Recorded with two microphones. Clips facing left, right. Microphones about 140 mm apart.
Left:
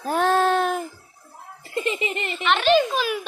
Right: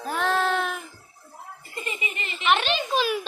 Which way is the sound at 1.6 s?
85° left.